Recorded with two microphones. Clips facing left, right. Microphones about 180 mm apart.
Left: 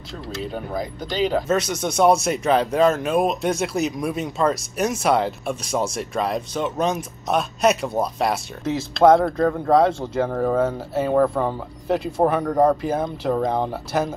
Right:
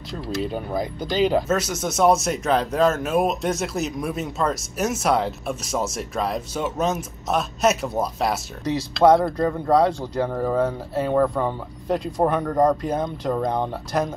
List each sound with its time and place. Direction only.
0.5 s speech: centre (ahead or behind)